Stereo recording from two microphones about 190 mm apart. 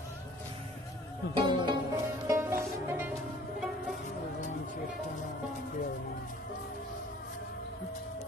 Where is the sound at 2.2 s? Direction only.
15° right (ahead or behind).